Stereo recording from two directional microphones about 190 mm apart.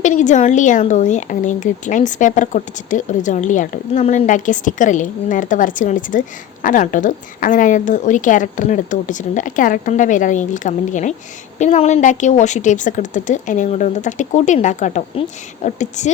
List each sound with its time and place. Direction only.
0.0 s a woman's voice: 40° left (ahead or behind)